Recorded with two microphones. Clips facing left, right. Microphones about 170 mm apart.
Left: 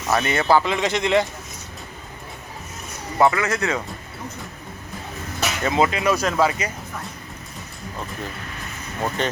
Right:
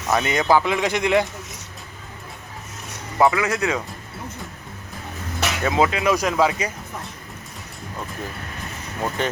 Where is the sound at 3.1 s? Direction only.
5° right (ahead or behind).